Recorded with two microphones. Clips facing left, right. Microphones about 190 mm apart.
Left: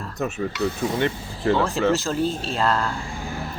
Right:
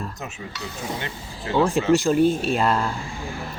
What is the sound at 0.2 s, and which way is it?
Speech, 60° left (ahead or behind).